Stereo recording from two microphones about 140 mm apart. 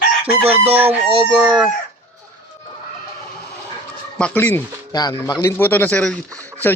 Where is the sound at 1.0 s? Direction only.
40° right (ahead or behind).